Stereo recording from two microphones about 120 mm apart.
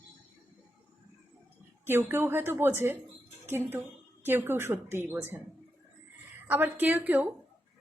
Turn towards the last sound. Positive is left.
turn(degrees=-15)  # may be behind; listen again after turning